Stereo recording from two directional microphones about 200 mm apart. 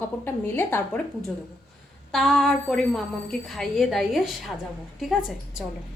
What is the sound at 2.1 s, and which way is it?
A woman's voice, centre (ahead or behind).